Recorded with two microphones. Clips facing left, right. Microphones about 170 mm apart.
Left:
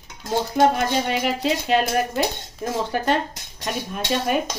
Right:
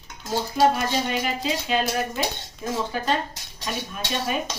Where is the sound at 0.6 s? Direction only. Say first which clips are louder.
Left 2 dB; 60° left (ahead or behind).